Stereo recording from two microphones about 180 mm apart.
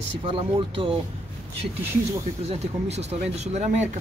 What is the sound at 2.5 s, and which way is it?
Speech, 35° right (ahead or behind).